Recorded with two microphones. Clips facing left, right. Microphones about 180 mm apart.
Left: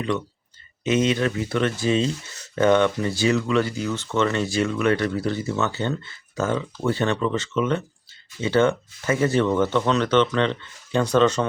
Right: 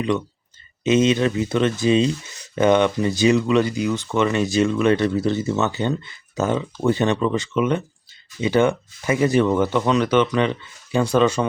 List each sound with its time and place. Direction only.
0.9 s speech: 20° right (ahead or behind)